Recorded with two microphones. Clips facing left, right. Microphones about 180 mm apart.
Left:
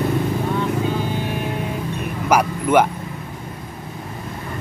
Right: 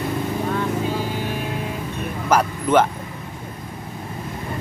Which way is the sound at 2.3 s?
10° left (ahead or behind).